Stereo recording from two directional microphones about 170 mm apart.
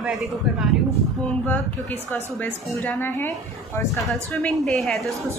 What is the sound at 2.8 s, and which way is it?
Speech, 10° left (ahead or behind).